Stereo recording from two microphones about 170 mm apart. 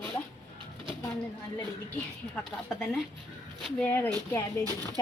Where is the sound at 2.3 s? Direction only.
5° left (ahead or behind).